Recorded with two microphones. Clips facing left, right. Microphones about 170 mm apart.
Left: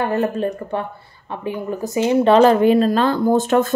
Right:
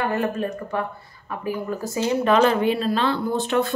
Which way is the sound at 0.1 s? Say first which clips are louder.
Left 4 dB; 30° left (ahead or behind).